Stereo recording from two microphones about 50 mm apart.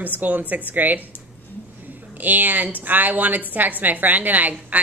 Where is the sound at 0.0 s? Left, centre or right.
Right.